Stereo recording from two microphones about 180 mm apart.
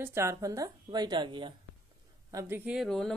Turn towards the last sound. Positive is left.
turn(degrees=0)  # may be behind; listen again after turning